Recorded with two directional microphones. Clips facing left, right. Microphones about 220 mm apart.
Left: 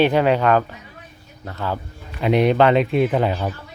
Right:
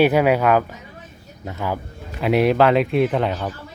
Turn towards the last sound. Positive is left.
turn(degrees=5)  # may be behind; listen again after turning